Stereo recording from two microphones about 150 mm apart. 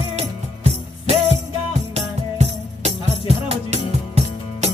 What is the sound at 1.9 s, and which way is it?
Music, 45° right (ahead or behind).